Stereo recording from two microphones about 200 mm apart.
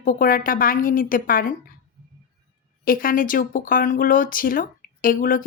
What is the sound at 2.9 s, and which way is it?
A woman's voice, 45° left (ahead or behind).